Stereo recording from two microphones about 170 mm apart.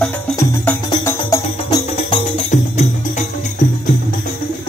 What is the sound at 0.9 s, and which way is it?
Music, 20° left (ahead or behind).